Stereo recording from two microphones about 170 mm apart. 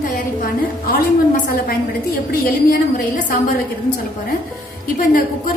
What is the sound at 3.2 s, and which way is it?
Speech, 50° left (ahead or behind).